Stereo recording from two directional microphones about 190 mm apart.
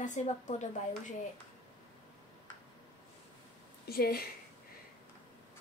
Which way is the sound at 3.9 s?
55° left (ahead or behind).